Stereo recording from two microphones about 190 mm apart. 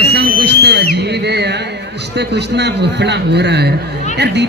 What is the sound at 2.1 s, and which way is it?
A man's voice, 60° right (ahead or behind).